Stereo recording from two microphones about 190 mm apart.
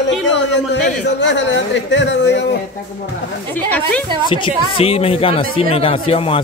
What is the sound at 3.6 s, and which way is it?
Speech, 5° left (ahead or behind).